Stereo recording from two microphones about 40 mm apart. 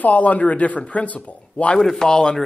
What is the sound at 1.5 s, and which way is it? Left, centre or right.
Speech, left.